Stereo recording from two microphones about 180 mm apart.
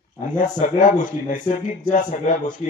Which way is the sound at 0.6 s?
45° left (ahead or behind).